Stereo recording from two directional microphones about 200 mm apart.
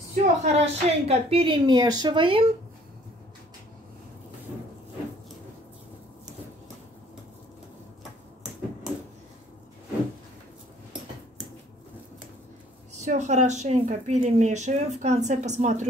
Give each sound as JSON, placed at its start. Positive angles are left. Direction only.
{"t": 0.1, "sound": "a woman's voice", "side_deg": -30}
{"t": 13.0, "sound": "speech", "side_deg": -35}